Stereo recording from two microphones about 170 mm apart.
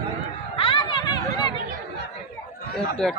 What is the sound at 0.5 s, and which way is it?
Chatter, 30° left (ahead or behind).